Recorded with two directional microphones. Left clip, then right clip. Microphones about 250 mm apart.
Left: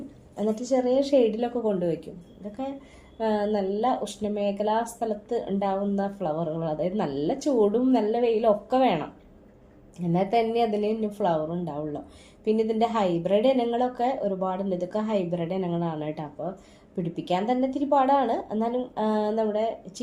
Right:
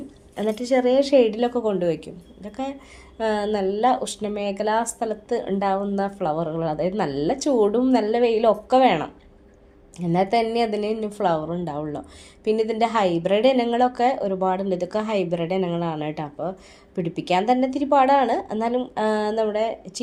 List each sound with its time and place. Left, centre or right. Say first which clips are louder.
0.7 s speech: right 5 dB; right